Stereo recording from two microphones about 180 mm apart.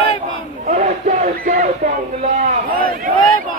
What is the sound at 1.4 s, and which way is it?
Speech, 55° right (ahead or behind).